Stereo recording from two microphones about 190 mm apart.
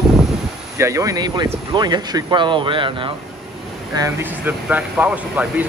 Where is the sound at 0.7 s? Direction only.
15° right (ahead or behind).